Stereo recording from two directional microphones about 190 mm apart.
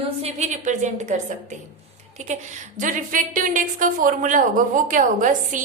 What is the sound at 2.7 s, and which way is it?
A woman's voice, 45° right (ahead or behind).